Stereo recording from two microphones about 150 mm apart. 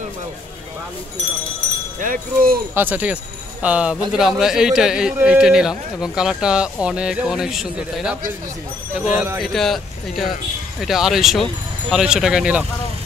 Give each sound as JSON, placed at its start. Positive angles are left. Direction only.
{"t": 2.0, "sound": "speech", "side_deg": -75}
{"t": 2.7, "sound": "a man's voice", "side_deg": -15}
{"t": 9.4, "sound": "a man's voice", "side_deg": 0}